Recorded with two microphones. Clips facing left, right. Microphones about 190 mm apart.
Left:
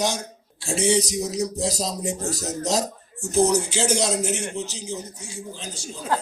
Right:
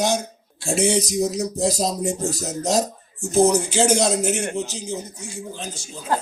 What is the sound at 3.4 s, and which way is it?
A man's voice, 50° right (ahead or behind).